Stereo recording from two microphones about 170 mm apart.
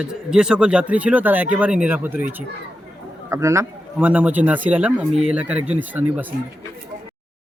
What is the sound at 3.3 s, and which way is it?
A man's voice, 15° right (ahead or behind).